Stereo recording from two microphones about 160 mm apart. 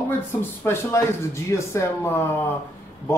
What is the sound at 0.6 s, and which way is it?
A woman's voice, 15° left (ahead or behind).